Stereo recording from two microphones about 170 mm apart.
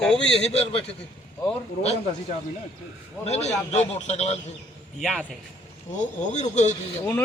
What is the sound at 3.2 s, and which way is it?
A man's voice, 40° left (ahead or behind).